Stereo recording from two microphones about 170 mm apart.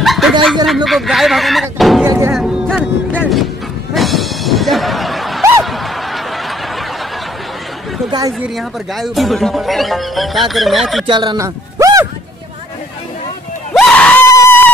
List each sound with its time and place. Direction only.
0.0 s snicker: centre (ahead or behind)
0.8 s speech: centre (ahead or behind)
2.0 s speech: 15° right (ahead or behind)
2.3 s speech: centre (ahead or behind)
3.9 s music: centre (ahead or behind)
5.6 s snicker: centre (ahead or behind)
8.5 s speech: centre (ahead or behind)
11.1 s speech: 25° right (ahead or behind)
13.7 s screaming: 5° left (ahead or behind)